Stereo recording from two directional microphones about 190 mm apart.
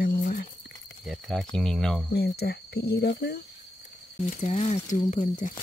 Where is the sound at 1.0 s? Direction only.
Centre (ahead or behind).